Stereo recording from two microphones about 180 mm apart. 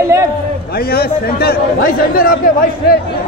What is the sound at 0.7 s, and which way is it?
A man's voice, 60° left (ahead or behind).